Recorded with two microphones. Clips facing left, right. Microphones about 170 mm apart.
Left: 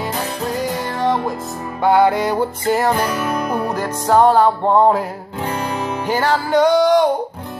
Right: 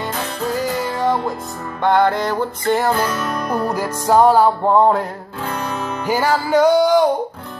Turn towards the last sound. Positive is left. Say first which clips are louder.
# even
turn(degrees=0)  # may be behind; listen again after turning